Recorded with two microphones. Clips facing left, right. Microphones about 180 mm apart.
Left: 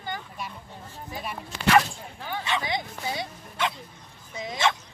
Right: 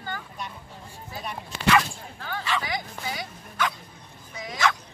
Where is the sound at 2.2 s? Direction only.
20° left (ahead or behind).